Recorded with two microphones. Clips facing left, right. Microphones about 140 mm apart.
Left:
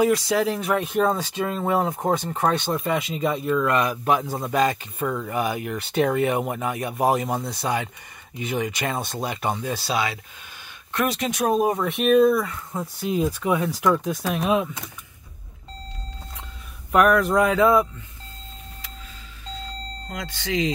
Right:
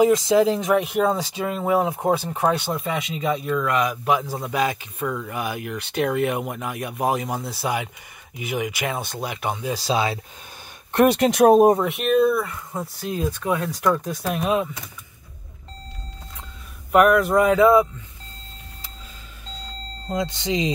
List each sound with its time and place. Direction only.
0.0 s speech: 20° right (ahead or behind)
10.9 s speech: 55° right (ahead or behind)
11.9 s speech: centre (ahead or behind)
13.1 s speech: 10° left (ahead or behind)
16.9 s speech: 5° right (ahead or behind)
20.1 s speech: 25° right (ahead or behind)